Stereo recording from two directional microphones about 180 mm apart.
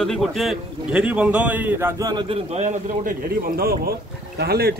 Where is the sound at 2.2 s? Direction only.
35° right (ahead or behind).